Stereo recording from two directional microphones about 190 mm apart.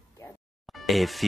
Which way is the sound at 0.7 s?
Centre (ahead or behind).